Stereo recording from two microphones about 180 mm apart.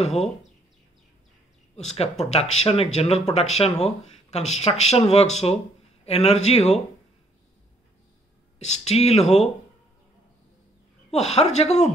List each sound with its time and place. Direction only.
1.9 s a man's voice: 35° left (ahead or behind)
8.5 s speech: 40° left (ahead or behind)
11.1 s speech: 35° left (ahead or behind)